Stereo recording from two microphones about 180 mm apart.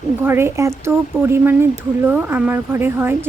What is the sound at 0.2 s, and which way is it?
Speech, 15° right (ahead or behind).